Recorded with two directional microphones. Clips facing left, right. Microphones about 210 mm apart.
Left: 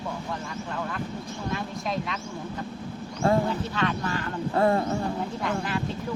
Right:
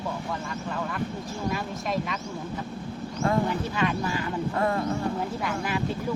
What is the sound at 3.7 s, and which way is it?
Speech, 10° right (ahead or behind).